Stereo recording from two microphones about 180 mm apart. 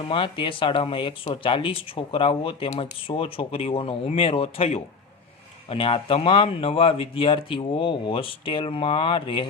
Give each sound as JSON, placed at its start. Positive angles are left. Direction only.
{"t": 0.1, "sound": "speech", "side_deg": 30}